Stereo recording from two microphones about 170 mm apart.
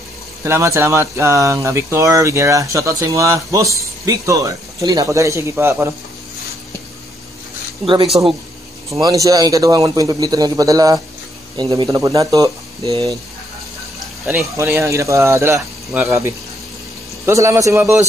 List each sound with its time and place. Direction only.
0.4 s speech: 15° right (ahead or behind)
7.8 s speech: 30° right (ahead or behind)
8.9 s a man's voice: 20° right (ahead or behind)
14.6 s speech: 15° right (ahead or behind)